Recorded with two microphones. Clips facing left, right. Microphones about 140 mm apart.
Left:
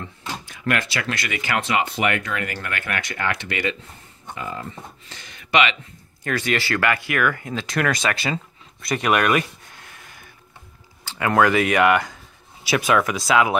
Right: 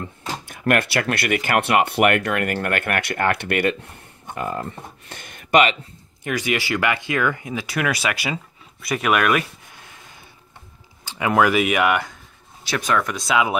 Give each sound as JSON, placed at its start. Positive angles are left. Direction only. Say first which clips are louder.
{"t": 0.5, "sound": "speech", "louder": "right 5 dB", "side_deg": -50}
{"t": 6.2, "sound": "speech", "louder": "even", "side_deg": -15}
{"t": 11.1, "sound": "speech", "louder": "even", "side_deg": -10}